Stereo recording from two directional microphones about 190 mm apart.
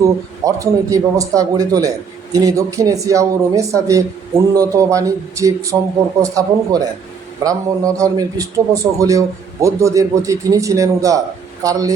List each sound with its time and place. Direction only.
0.0 s a man's voice: 15° right (ahead or behind)